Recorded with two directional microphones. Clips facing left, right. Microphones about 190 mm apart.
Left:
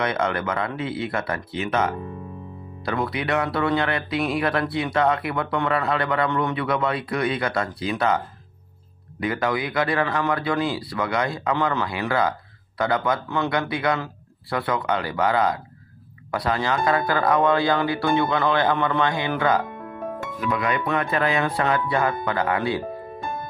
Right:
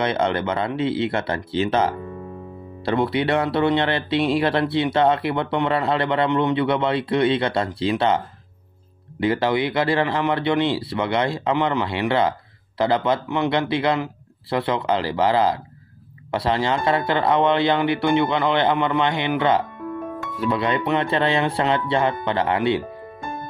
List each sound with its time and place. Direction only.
0.0 s speech: 30° right (ahead or behind)
9.2 s speech: 30° right (ahead or behind)